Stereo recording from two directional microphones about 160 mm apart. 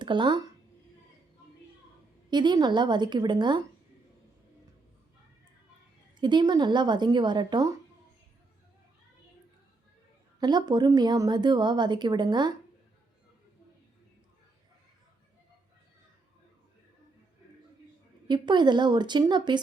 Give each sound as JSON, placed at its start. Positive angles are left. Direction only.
{"t": 0.0, "sound": "speech", "side_deg": -30}
{"t": 2.3, "sound": "a woman's voice", "side_deg": -25}
{"t": 6.1, "sound": "a woman's voice", "side_deg": -30}
{"t": 10.4, "sound": "a woman's voice", "side_deg": -25}
{"t": 18.3, "sound": "a woman's voice", "side_deg": -30}